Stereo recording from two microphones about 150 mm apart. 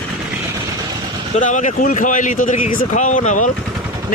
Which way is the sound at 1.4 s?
60° left (ahead or behind).